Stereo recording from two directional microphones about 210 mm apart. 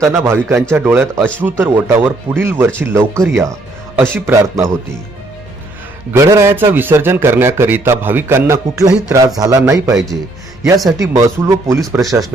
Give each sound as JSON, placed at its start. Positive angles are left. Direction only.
{"t": 0.0, "sound": "speech", "side_deg": -15}
{"t": 6.1, "sound": "speech", "side_deg": -15}
{"t": 10.6, "sound": "a man's voice", "side_deg": 0}
{"t": 10.9, "sound": "speech", "side_deg": -15}